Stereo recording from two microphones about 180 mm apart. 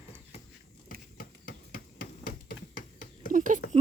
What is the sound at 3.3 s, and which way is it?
Speech, 45° right (ahead or behind).